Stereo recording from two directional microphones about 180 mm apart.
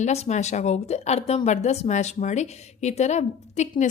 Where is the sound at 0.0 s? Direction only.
40° left (ahead or behind).